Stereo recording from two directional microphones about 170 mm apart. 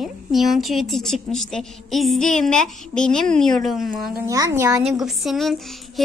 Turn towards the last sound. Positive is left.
turn(degrees=0)  # may be behind; listen again after turning